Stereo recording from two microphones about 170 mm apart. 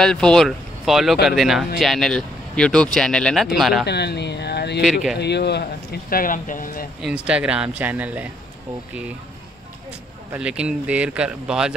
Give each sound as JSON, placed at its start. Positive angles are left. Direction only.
{"t": 0.0, "sound": "speech", "side_deg": 5}
{"t": 3.8, "sound": "speech", "side_deg": 80}
{"t": 7.0, "sound": "speech", "side_deg": -5}
{"t": 10.3, "sound": "speech", "side_deg": -5}